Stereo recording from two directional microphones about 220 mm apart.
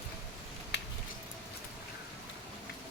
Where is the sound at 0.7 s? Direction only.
55° left (ahead or behind).